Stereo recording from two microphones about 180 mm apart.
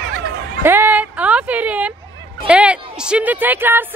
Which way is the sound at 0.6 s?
10° right (ahead or behind).